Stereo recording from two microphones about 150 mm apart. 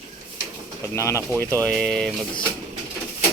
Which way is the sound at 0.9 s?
20° left (ahead or behind).